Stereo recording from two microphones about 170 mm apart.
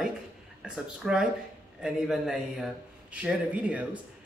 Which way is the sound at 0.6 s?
5° right (ahead or behind).